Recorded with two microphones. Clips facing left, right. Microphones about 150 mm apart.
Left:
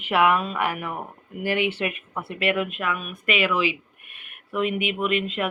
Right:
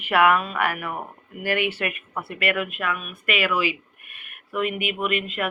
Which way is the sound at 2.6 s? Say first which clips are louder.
Left 2 dB; 5° right (ahead or behind).